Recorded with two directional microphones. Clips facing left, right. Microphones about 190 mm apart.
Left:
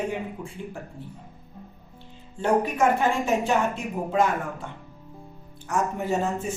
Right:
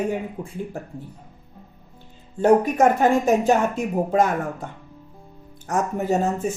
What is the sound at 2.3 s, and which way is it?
Speech, 40° right (ahead or behind).